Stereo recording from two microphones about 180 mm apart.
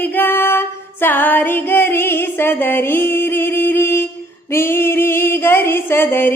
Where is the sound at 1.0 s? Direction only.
10° left (ahead or behind).